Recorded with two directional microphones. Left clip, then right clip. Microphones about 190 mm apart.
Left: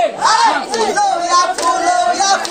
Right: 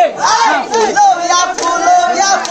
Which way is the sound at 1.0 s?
30° right (ahead or behind).